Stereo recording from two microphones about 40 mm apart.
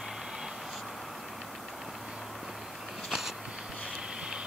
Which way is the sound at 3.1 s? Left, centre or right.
Centre.